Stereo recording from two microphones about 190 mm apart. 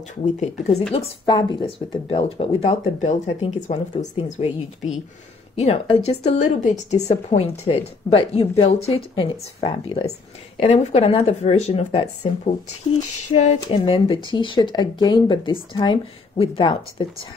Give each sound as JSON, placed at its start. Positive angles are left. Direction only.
{"t": 0.2, "sound": "a woman's voice", "side_deg": 35}
{"t": 5.6, "sound": "a woman's voice", "side_deg": 30}